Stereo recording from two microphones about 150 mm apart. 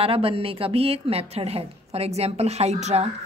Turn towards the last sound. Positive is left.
turn(degrees=-45)  # may be behind; listen again after turning